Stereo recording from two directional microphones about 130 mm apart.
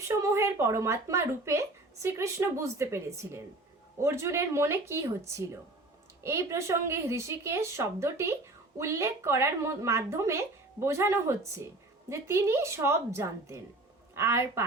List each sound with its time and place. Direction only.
0.1 s speech: 20° right (ahead or behind)